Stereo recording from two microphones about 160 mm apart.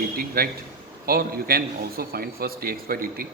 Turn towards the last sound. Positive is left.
turn(degrees=-65)  # may be behind; listen again after turning